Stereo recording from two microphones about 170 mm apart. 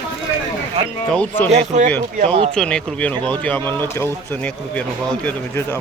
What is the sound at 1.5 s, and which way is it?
Speech, 45° right (ahead or behind).